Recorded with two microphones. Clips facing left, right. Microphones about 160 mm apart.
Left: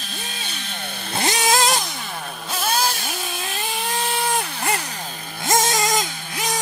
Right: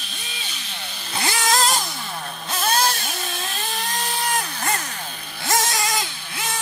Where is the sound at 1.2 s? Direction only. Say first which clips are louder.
Left 3 dB; 20° left (ahead or behind).